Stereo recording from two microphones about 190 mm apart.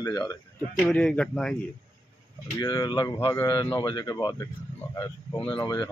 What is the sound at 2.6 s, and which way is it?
Speech, 20° left (ahead or behind).